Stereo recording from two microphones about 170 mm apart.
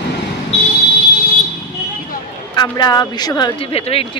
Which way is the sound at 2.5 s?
25° left (ahead or behind).